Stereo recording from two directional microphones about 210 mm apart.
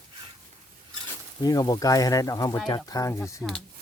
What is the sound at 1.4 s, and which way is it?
Speech, 20° left (ahead or behind).